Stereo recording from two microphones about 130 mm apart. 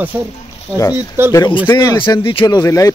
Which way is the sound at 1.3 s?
35° left (ahead or behind).